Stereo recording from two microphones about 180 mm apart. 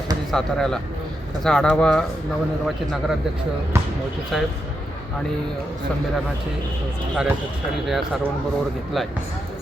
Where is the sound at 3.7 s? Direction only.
15° right (ahead or behind).